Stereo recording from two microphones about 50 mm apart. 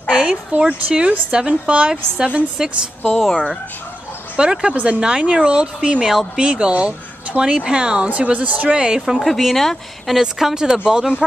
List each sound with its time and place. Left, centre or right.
0.1 s speech: right
4.4 s speech: centre
9.1 s speech: centre
10.2 s speech: centre